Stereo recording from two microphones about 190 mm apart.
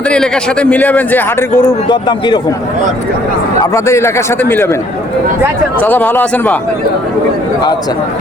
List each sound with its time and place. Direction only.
0.1 s a man's voice: 5° left (ahead or behind)
1.9 s speech: 20° left (ahead or behind)
3.6 s a man's voice: 15° left (ahead or behind)
5.8 s a man's voice: 10° left (ahead or behind)